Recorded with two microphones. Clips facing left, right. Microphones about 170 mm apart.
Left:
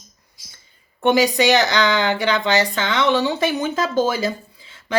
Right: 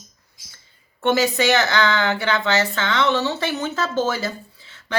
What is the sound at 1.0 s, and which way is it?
Speech, 15° left (ahead or behind).